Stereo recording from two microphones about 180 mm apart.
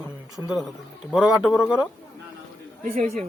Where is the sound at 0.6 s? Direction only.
5° right (ahead or behind).